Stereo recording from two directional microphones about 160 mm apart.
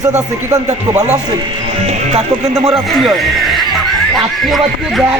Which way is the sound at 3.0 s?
Centre (ahead or behind).